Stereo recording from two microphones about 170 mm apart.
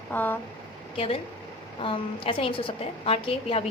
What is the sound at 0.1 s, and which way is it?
Speech, 10° left (ahead or behind).